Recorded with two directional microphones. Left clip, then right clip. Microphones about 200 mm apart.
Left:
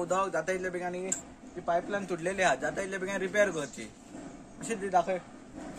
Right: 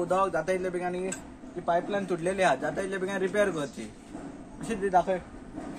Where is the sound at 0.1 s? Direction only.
5° left (ahead or behind).